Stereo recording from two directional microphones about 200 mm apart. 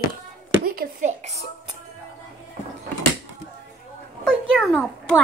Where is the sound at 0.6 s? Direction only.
45° right (ahead or behind).